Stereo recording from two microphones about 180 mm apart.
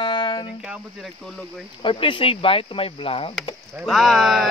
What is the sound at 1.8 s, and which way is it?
Speech, 30° left (ahead or behind).